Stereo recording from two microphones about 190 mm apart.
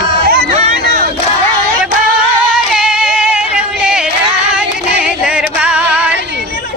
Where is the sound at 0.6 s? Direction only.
35° right (ahead or behind).